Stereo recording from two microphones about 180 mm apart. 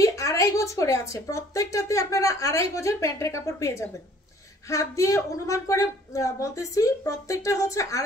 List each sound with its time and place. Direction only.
0.0 s a woman's voice: 15° left (ahead or behind)